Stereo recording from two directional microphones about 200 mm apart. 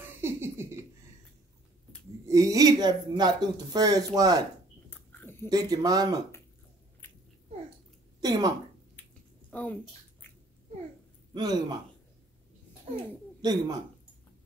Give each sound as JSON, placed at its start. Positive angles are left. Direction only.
{"t": 0.0, "sound": "a sound", "side_deg": -10}
{"t": 2.2, "sound": "speech", "side_deg": -15}
{"t": 4.8, "sound": "a sound", "side_deg": 10}
{"t": 5.5, "sound": "speech", "side_deg": -20}
{"t": 8.2, "sound": "speech", "side_deg": -20}
{"t": 9.5, "sound": "speech", "side_deg": 5}
{"t": 11.3, "sound": "speech", "side_deg": -20}
{"t": 13.4, "sound": "speech", "side_deg": -20}